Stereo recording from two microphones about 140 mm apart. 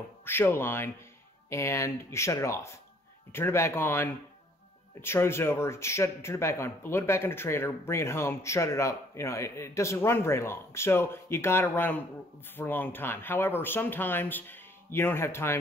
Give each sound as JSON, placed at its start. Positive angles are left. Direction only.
{"t": 0.2, "sound": "speech", "side_deg": 15}